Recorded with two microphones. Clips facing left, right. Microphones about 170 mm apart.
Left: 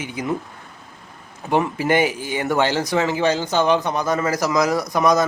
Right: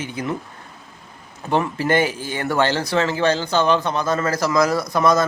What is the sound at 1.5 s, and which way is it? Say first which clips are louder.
Speech: left 1 dB; 15° left (ahead or behind).